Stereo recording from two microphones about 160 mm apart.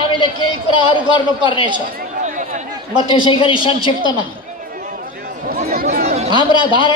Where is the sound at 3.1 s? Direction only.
30° left (ahead or behind).